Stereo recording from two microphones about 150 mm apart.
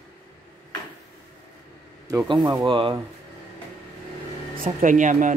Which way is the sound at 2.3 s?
30° right (ahead or behind).